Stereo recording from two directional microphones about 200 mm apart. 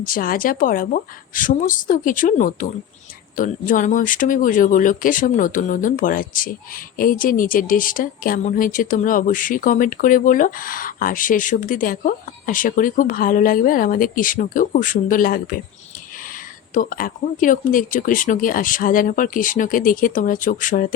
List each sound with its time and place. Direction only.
0.0 s speech: 45° left (ahead or behind)